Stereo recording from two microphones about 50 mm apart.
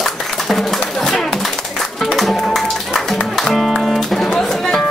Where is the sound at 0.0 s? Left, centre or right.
Centre.